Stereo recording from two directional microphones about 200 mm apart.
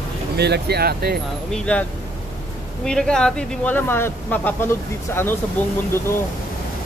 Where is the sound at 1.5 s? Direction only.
5° left (ahead or behind).